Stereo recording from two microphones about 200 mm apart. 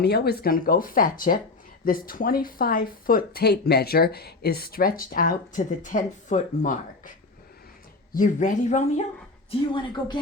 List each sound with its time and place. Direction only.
0.0 s speech: 55° left (ahead or behind); by 7.1 s 40° left (ahead or behind)
8.1 s speech: 40° left (ahead or behind)
9.5 s speech: 25° left (ahead or behind)